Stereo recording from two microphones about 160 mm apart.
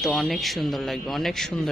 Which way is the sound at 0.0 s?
Centre (ahead or behind).